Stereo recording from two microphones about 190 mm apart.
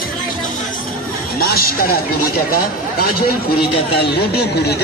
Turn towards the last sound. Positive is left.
turn(degrees=60)  # may be behind; listen again after turning